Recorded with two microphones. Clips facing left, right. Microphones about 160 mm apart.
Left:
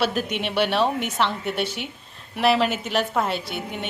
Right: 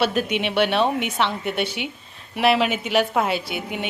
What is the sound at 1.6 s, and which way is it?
Speech, 65° right (ahead or behind).